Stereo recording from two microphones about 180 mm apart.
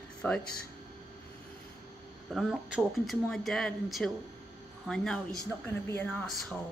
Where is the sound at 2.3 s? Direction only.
Centre (ahead or behind).